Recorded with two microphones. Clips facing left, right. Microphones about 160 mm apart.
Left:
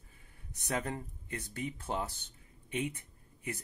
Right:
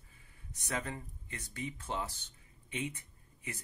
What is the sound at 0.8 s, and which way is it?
Speech, 55° left (ahead or behind).